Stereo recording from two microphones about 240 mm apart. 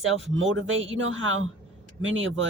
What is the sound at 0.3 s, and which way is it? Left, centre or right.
Speech, right.